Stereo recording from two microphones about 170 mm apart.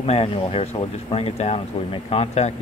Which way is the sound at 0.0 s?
35° left (ahead or behind).